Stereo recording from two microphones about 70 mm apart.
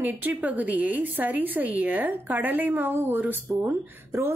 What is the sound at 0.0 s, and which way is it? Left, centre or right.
A woman's voice, right.